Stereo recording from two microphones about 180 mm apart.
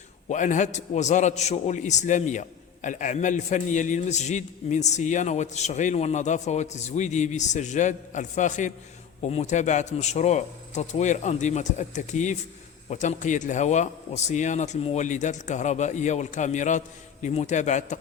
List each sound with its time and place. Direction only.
0.3 s a man's voice: 45° left (ahead or behind)